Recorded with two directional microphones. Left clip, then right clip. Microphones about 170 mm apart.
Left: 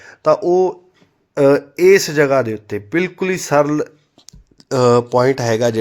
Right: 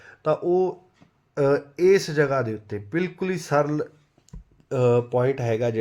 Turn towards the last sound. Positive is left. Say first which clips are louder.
# left 8 dB
turn(degrees=-5)  # may be behind; listen again after turning